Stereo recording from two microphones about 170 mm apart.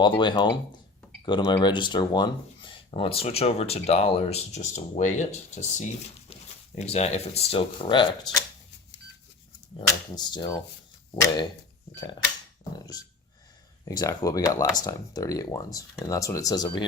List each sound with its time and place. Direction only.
0.2 s speech: 25° left (ahead or behind)
10.2 s speech: 25° left (ahead or behind)
13.8 s speech: 20° left (ahead or behind)